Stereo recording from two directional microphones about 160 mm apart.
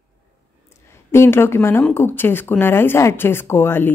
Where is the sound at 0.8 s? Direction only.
15° left (ahead or behind).